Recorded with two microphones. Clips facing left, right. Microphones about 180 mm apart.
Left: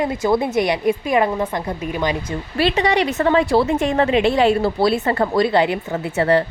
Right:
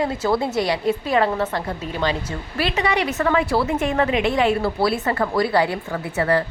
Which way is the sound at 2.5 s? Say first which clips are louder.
Left 4 dB; 30° left (ahead or behind).